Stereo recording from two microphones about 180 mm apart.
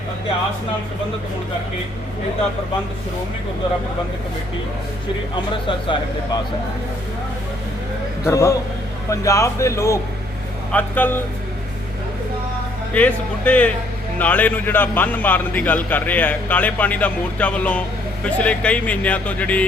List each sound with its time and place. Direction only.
5.6 s speech: 25° left (ahead or behind)
8.3 s a man's voice: 15° left (ahead or behind)
12.9 s a man's voice: 5° left (ahead or behind)